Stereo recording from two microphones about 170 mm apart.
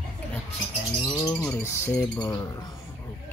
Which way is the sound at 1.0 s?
15° left (ahead or behind).